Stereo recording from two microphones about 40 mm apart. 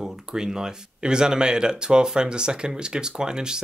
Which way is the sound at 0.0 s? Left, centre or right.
Centre.